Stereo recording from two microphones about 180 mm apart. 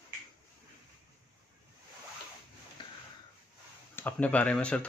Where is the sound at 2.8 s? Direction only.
25° left (ahead or behind).